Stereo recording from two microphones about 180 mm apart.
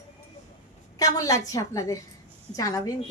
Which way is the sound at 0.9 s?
20° left (ahead or behind).